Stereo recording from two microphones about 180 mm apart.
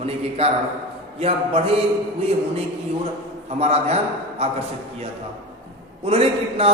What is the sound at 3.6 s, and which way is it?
Speech, 35° right (ahead or behind).